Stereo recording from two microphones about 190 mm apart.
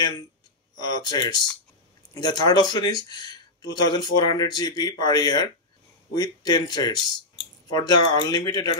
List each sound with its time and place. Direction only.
0.7 s speech: 20° left (ahead or behind)